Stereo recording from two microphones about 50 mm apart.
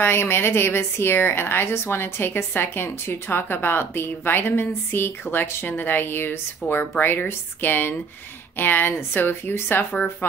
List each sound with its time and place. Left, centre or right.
0.0 s a woman's voice: left